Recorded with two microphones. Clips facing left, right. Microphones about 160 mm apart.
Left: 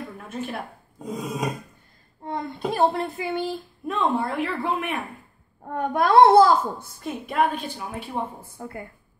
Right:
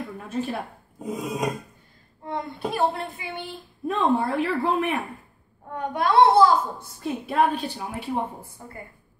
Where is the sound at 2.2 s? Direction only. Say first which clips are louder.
Left 1 dB; 40° left (ahead or behind).